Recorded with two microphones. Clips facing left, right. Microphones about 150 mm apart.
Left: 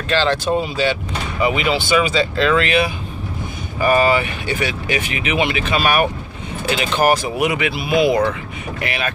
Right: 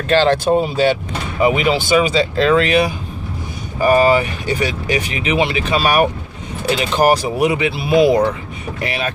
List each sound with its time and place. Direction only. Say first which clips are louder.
0.1 s speech: right 4 dB; 50° right (ahead or behind)
2.0 s speech: right 2 dB; 35° right (ahead or behind)